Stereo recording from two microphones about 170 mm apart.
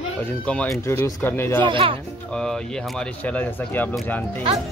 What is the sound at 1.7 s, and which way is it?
Speech, 30° right (ahead or behind).